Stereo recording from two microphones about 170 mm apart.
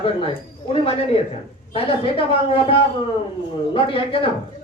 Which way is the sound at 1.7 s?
35° left (ahead or behind).